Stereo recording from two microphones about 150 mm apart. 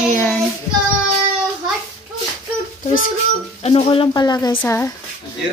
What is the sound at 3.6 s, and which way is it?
Speech, 40° left (ahead or behind).